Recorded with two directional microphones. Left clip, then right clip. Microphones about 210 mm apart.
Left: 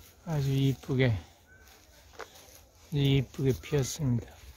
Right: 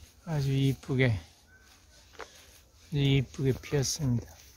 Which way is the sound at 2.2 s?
30° right (ahead or behind).